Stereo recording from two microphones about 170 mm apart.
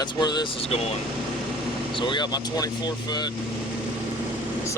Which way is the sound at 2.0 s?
25° left (ahead or behind).